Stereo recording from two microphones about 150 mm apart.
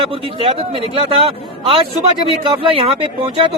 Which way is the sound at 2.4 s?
35° right (ahead or behind).